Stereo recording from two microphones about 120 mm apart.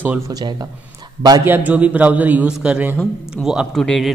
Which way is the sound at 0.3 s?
35° right (ahead or behind).